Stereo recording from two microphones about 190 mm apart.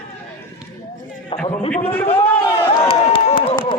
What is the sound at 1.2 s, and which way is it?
A man's voice, 30° left (ahead or behind).